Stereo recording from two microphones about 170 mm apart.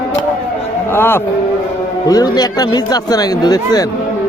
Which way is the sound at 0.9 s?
15° left (ahead or behind).